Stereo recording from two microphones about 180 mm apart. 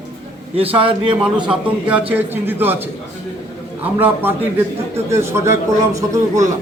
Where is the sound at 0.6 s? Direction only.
30° right (ahead or behind).